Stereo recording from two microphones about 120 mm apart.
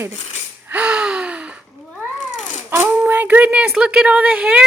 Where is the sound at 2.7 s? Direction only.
15° right (ahead or behind).